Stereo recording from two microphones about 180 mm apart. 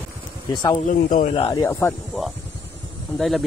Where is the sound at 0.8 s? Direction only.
40° left (ahead or behind).